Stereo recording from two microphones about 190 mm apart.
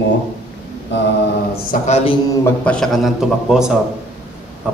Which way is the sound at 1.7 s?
35° left (ahead or behind).